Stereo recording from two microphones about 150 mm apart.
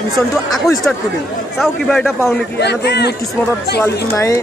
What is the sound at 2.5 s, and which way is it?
Speech, 90° left.